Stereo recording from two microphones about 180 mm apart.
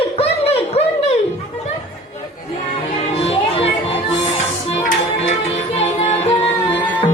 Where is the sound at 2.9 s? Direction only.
35° left (ahead or behind).